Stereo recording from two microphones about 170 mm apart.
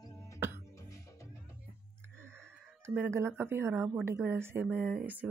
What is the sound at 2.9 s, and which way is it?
Speech, 15° right (ahead or behind).